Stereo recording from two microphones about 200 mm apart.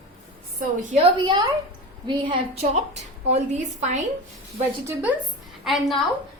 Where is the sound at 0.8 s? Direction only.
40° right (ahead or behind).